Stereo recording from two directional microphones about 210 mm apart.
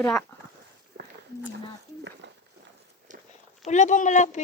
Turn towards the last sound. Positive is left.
turn(degrees=35)  # may be behind; listen again after turning